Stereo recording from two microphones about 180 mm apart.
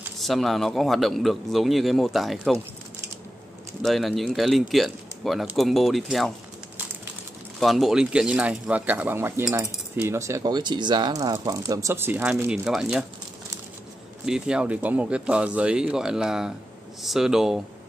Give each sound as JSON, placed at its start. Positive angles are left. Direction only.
{"t": 0.2, "sound": "speech", "side_deg": 0}
{"t": 3.8, "sound": "speech", "side_deg": 0}
{"t": 7.6, "sound": "speech", "side_deg": 0}
{"t": 14.2, "sound": "speech", "side_deg": -5}